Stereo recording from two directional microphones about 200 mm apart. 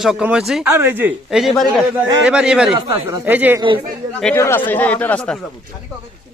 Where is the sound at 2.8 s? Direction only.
15° right (ahead or behind).